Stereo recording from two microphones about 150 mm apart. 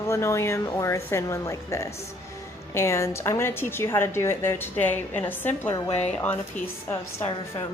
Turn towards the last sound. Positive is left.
turn(degrees=15)  # may be behind; listen again after turning